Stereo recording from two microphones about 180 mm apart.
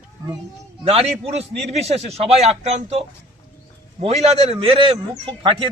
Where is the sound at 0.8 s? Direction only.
35° right (ahead or behind).